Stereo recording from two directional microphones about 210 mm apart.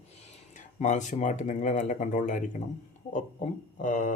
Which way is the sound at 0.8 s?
35° left (ahead or behind).